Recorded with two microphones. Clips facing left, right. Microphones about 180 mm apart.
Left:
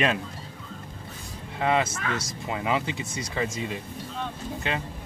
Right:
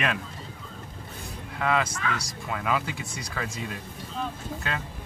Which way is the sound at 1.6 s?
30° left (ahead or behind).